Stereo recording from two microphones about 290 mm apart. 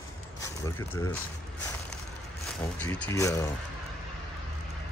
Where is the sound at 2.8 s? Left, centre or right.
Centre.